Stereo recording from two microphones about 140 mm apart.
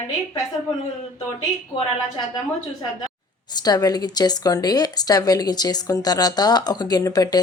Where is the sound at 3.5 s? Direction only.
30° left (ahead or behind).